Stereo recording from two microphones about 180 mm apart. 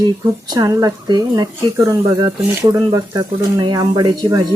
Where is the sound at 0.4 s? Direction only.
20° right (ahead or behind).